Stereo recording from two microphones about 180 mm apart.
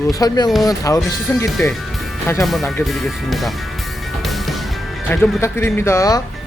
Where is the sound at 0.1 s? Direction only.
20° left (ahead or behind).